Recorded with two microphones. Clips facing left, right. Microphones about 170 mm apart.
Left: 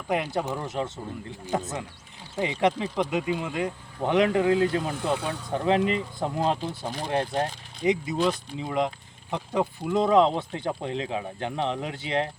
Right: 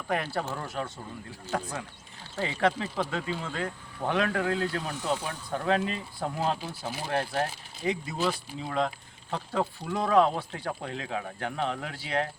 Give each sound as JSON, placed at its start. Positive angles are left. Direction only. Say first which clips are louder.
{"t": 0.1, "sound": "speech", "louder": "left 4 dB", "side_deg": 20}
{"t": 4.9, "sound": "speech", "louder": "left 3 dB", "side_deg": 60}
{"t": 5.5, "sound": "speech", "louder": "left 4 dB", "side_deg": 20}